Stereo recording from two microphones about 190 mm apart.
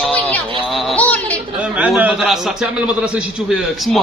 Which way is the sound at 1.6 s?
5° right (ahead or behind).